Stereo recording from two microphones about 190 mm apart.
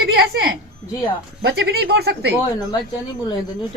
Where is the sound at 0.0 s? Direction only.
55° right (ahead or behind).